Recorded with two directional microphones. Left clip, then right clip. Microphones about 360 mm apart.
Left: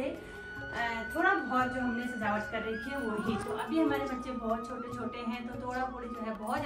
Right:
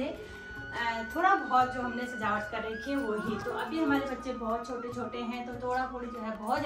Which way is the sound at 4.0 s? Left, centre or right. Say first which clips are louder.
Right 1 dB; centre.